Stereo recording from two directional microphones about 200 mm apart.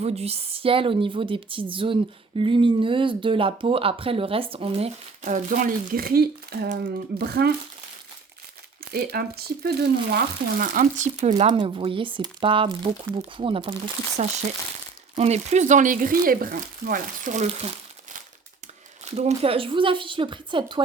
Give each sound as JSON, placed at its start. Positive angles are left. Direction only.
{"t": 0.0, "sound": "a woman's voice", "side_deg": -30}
{"t": 8.9, "sound": "a woman's voice", "side_deg": -50}
{"t": 19.0, "sound": "a woman's voice", "side_deg": -35}